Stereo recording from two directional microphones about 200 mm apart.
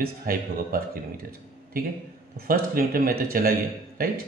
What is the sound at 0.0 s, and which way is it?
Speech, 45° right (ahead or behind).